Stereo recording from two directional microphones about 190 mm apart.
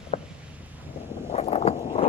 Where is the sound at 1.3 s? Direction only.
35° left (ahead or behind).